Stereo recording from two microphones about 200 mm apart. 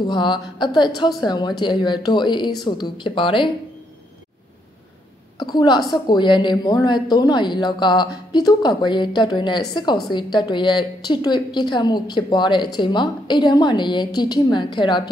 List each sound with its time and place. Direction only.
0.0 s a woman's voice: 20° left (ahead or behind)
5.4 s a woman's voice: 20° left (ahead or behind)